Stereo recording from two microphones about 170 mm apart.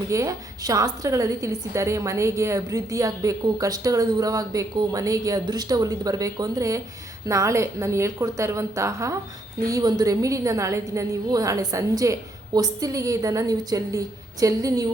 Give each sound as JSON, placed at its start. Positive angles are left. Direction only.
{"t": 0.1, "sound": "a woman's voice", "side_deg": -20}